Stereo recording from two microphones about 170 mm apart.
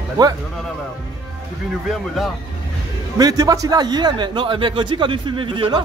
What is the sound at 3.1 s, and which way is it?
A man's voice, 20° right (ahead or behind).